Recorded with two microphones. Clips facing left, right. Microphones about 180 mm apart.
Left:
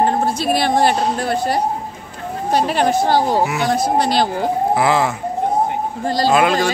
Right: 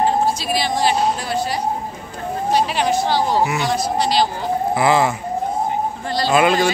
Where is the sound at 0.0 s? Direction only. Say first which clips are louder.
Left 1 dB; 55° left (ahead or behind).